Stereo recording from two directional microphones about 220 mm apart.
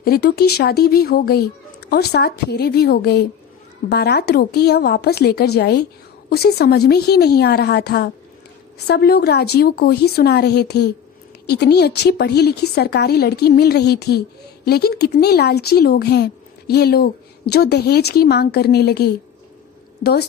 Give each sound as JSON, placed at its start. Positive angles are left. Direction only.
{"t": 0.0, "sound": "a woman's voice", "side_deg": 45}